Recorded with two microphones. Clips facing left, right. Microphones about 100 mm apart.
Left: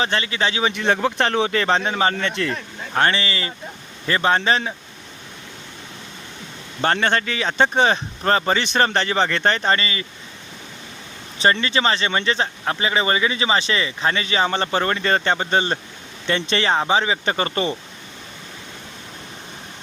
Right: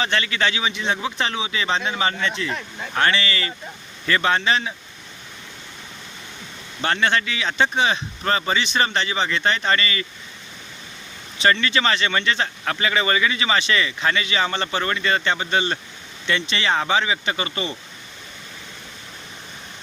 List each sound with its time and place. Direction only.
0.0 s a man's voice: 30° left (ahead or behind)
0.6 s speech: 55° left (ahead or behind)
2.9 s speech: 35° left (ahead or behind)
6.8 s speech: 40° left (ahead or behind)
11.6 s speech: 30° left (ahead or behind)
16.7 s speech: 30° left (ahead or behind)